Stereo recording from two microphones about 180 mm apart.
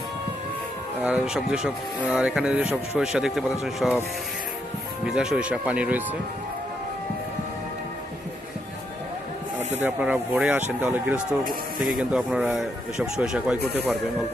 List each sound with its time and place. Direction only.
1.0 s speech: 5° right (ahead or behind)
5.0 s speech: 5° right (ahead or behind)
9.7 s speech: 10° right (ahead or behind)